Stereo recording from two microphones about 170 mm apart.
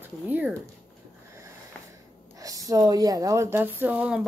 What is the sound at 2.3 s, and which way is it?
A woman's voice, 20° right (ahead or behind).